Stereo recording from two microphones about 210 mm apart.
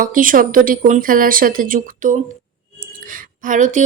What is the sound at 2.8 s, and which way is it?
Whispering, 40° right (ahead or behind).